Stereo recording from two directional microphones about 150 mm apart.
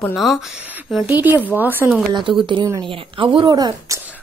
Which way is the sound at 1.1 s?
10° right (ahead or behind).